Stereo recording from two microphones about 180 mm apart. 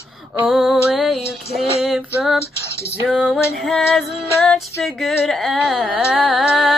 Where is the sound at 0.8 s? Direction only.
Centre (ahead or behind).